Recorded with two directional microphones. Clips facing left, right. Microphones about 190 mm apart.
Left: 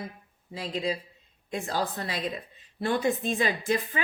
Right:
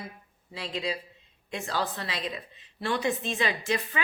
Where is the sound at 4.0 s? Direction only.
40° left (ahead or behind).